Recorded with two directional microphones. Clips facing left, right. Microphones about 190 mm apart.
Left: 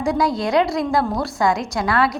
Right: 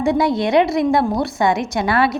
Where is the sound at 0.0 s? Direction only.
25° right (ahead or behind).